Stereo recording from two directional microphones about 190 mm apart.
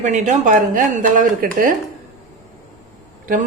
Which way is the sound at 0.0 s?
40° right (ahead or behind).